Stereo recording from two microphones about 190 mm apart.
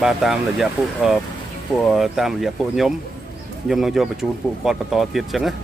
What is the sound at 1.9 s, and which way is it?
Speech, centre (ahead or behind).